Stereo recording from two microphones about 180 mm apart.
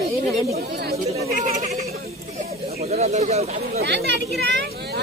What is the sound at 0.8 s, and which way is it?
Speech, 45° right (ahead or behind).